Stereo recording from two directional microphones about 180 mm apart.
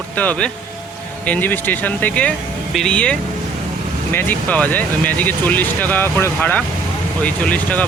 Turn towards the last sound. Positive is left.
turn(degrees=10)  # may be behind; listen again after turning